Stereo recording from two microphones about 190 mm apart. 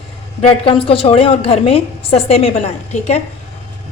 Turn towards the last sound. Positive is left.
turn(degrees=35)  # may be behind; listen again after turning